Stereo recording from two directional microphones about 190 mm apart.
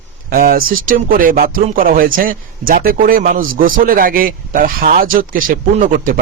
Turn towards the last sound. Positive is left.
turn(degrees=-45)  # may be behind; listen again after turning